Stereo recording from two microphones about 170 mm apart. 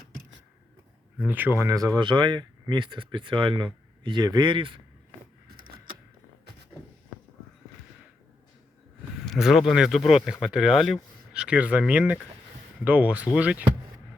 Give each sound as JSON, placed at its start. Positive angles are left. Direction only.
{"t": 1.2, "sound": "speech", "side_deg": -10}
{"t": 5.5, "sound": "a sound", "side_deg": -55}
{"t": 9.2, "sound": "speech", "side_deg": 0}